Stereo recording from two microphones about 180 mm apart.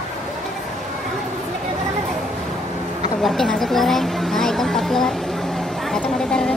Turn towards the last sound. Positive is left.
turn(degrees=5)  # may be behind; listen again after turning